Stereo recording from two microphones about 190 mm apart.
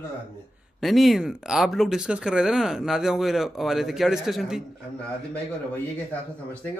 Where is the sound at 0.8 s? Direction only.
Centre (ahead or behind).